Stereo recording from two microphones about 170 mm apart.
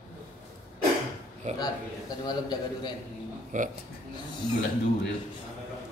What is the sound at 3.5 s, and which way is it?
Speech, 50° right (ahead or behind).